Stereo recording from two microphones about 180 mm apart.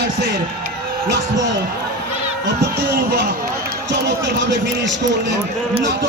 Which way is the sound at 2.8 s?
70° right (ahead or behind).